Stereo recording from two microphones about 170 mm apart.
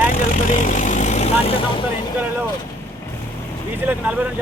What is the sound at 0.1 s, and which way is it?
Vehicle, 55° left (ahead or behind).